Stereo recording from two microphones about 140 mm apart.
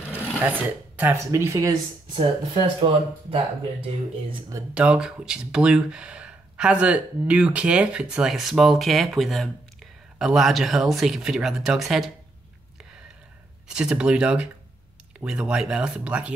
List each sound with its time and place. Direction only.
0.5 s speech: 10° right (ahead or behind)
2.1 s speech: 35° right (ahead or behind)
4.7 s speech: 10° right (ahead or behind)
13.7 s speech: 5° right (ahead or behind)